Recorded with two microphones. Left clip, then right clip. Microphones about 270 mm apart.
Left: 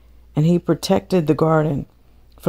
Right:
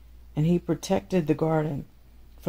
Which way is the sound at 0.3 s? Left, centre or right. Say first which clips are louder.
Left 8 dB; left.